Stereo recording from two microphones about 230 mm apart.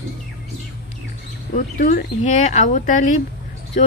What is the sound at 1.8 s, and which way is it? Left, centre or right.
A woman's voice, left.